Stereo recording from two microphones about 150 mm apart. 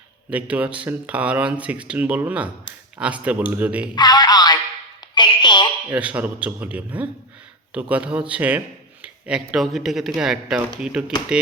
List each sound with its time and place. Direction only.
0.3 s a man's voice: 10° right (ahead or behind)
3.9 s music: 30° left (ahead or behind)
5.1 s a sound: 30° left (ahead or behind)
5.9 s a man's voice: 10° right (ahead or behind)